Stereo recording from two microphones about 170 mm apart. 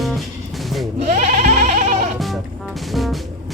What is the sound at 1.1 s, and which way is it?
Bleat, 50° right (ahead or behind).